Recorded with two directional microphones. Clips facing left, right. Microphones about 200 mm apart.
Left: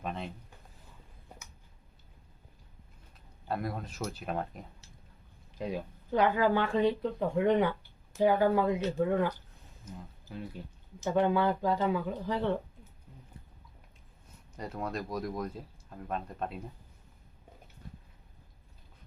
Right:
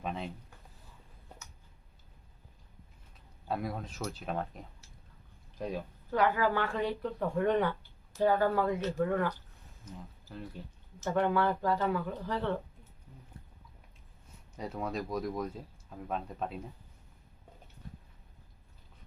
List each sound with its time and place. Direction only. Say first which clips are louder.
0.0 s speech: even; centre (ahead or behind)
3.5 s speech: left 1 dB; centre (ahead or behind); by 9.3 s 20° left (ahead or behind)
10.3 s speech: left 3 dB; 10° left (ahead or behind)
14.5 s speech: even; centre (ahead or behind)